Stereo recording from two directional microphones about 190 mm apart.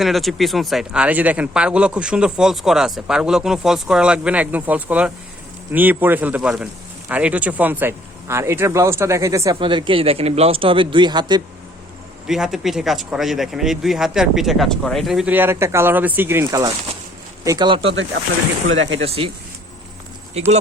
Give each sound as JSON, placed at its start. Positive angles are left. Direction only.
{"t": 0.0, "sound": "speech", "side_deg": 0}
{"t": 12.3, "sound": "speech", "side_deg": 0}
{"t": 18.6, "sound": "speech", "side_deg": -90}
{"t": 18.9, "sound": "speech", "side_deg": -30}